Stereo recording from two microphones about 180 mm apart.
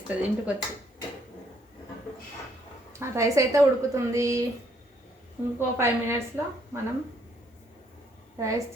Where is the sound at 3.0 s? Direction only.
15° right (ahead or behind).